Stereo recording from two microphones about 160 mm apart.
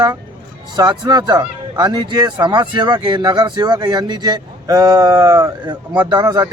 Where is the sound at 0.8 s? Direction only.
25° right (ahead or behind).